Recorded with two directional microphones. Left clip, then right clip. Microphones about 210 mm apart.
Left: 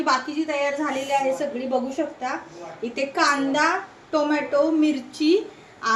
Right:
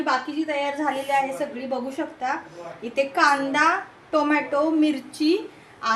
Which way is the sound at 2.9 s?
35° right (ahead or behind).